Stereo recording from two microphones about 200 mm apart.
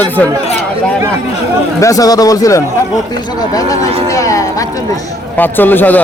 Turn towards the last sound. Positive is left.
turn(degrees=10)  # may be behind; listen again after turning